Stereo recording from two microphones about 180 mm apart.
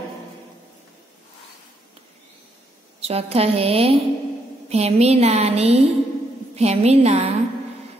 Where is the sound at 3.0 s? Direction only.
35° right (ahead or behind).